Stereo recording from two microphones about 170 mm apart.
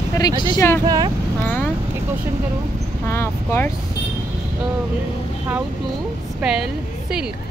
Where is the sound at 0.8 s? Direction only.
20° right (ahead or behind).